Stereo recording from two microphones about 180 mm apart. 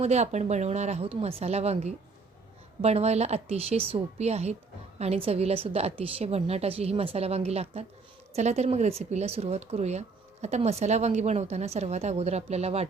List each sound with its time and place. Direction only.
0.0 s a woman's voice: 40° right (ahead or behind)